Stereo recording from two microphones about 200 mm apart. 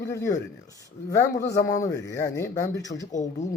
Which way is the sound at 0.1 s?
15° left (ahead or behind).